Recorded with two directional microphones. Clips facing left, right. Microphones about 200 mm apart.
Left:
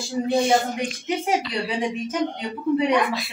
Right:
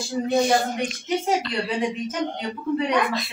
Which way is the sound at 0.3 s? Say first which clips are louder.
Even; 25° left (ahead or behind).